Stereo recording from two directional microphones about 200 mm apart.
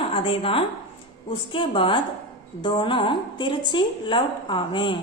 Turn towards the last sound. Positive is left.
turn(degrees=25)  # may be behind; listen again after turning